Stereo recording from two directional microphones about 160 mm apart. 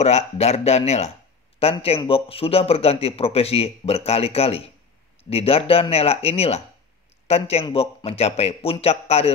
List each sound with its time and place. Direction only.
0.0 s a man's voice: 45° left (ahead or behind)